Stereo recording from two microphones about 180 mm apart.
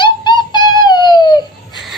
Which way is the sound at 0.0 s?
25° left (ahead or behind).